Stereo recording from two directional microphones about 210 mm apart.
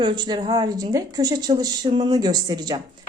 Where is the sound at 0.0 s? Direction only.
20° right (ahead or behind).